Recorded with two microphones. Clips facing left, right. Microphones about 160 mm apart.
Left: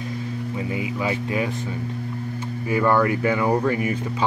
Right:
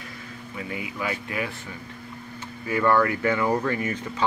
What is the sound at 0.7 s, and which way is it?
Speech, 25° left (ahead or behind).